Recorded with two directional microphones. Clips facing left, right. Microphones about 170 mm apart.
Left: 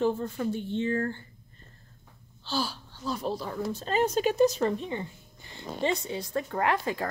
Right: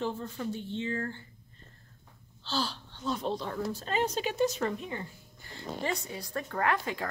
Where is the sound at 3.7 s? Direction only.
30° left (ahead or behind).